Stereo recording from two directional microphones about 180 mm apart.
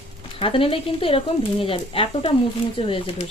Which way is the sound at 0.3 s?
30° left (ahead or behind).